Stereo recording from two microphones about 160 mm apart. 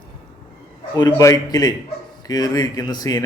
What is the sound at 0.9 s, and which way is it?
A man's voice, 25° left (ahead or behind).